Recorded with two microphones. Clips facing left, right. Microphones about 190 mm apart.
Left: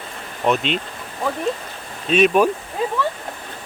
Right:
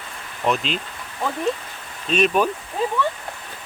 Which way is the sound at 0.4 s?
Centre (ahead or behind).